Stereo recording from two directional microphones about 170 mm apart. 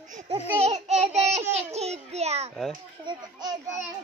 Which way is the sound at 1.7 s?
40° right (ahead or behind).